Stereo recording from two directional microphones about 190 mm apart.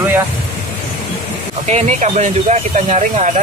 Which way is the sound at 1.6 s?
35° right (ahead or behind).